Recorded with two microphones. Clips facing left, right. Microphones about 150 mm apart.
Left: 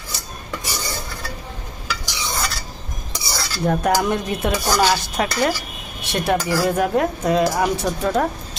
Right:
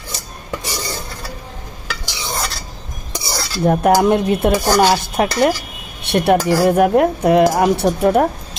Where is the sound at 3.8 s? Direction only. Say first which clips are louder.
Right 9 dB; 55° right (ahead or behind).